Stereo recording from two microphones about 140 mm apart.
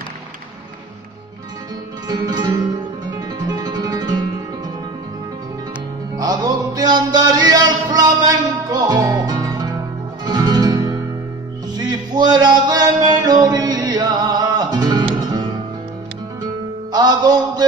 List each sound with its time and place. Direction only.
2.0 s music: 30° right (ahead or behind)
6.1 s music: 25° right (ahead or behind)
16.9 s music: 30° right (ahead or behind)